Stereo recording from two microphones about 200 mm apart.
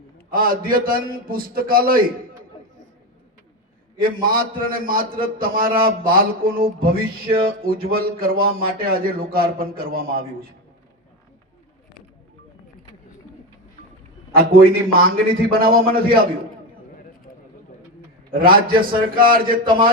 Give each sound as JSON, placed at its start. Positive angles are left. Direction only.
{"t": 0.3, "sound": "speech", "side_deg": -45}
{"t": 3.9, "sound": "speech", "side_deg": -45}
{"t": 14.3, "sound": "speech", "side_deg": -45}
{"t": 18.3, "sound": "speech", "side_deg": -45}